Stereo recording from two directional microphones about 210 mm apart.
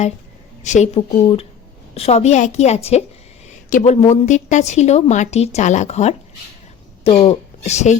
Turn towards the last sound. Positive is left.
turn(degrees=35)  # may be behind; listen again after turning